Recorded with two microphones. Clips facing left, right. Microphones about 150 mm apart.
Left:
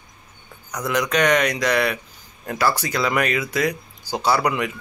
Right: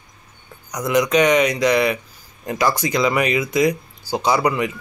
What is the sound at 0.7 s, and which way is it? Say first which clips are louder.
Speech: right 5 dB; 10° right (ahead or behind).